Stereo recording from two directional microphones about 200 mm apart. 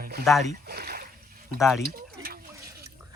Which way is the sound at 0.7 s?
50° right (ahead or behind).